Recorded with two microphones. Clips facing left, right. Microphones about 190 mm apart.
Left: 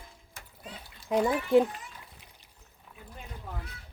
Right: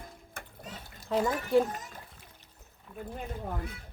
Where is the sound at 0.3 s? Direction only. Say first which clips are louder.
Right 1 dB; 45° right (ahead or behind).